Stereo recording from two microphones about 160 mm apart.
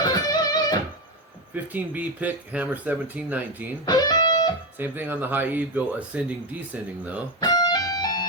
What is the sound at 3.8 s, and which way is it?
Music, 25° left (ahead or behind).